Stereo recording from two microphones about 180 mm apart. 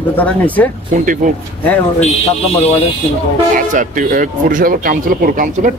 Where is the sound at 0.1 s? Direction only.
10° left (ahead or behind).